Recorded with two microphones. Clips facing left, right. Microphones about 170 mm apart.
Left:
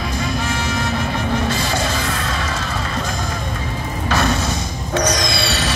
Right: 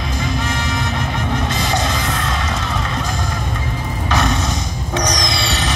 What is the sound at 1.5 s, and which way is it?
Music, 20° right (ahead or behind).